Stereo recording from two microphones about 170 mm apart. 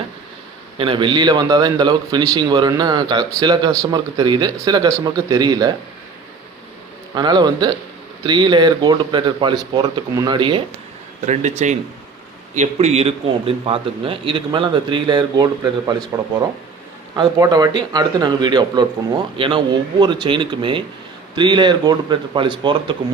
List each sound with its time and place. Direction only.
0.8 s a man's voice: 30° right (ahead or behind)
7.1 s a man's voice: 25° right (ahead or behind)
11.3 s a man's voice: 45° right (ahead or behind); by 16.0 s 25° right (ahead or behind)
17.2 s a man's voice: 20° right (ahead or behind)